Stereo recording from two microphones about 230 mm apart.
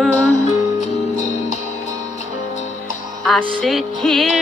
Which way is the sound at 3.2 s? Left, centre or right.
Centre.